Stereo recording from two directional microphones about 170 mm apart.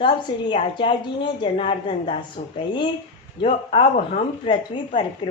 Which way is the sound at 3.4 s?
35° left (ahead or behind).